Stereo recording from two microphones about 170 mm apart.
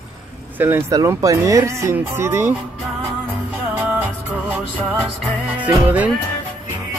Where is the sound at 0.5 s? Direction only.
15° right (ahead or behind).